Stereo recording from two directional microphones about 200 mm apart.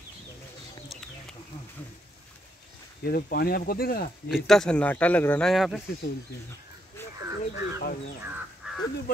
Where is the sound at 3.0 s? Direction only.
50° left (ahead or behind).